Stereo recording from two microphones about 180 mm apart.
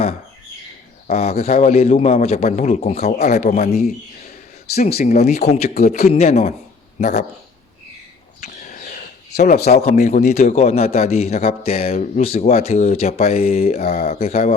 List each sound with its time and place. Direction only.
1.0 s a man's voice: 35° left (ahead or behind)
4.7 s speech: 60° left (ahead or behind)
4.9 s a man's voice: 40° left (ahead or behind)
8.4 s vehicle: 45° left (ahead or behind)
9.7 s a man's voice: 35° left (ahead or behind)